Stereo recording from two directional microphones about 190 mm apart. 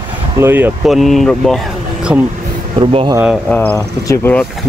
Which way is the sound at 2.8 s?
25° right (ahead or behind).